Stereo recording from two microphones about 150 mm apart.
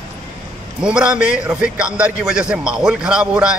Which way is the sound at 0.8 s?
5° right (ahead or behind).